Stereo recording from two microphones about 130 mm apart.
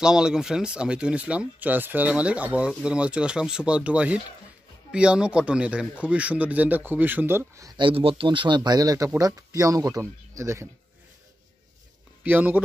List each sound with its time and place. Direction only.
0.0 s speech: 5° right (ahead or behind); by 7.7 s 20° right (ahead or behind)
7.7 s speech: 40° right (ahead or behind); by 10.7 s 20° right (ahead or behind)
12.2 s speech: 10° right (ahead or behind)